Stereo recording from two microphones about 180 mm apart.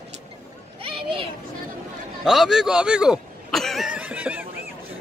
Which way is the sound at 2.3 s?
5° right (ahead or behind).